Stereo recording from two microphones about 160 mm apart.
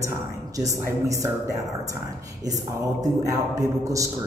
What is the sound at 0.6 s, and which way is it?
Speech, 20° right (ahead or behind).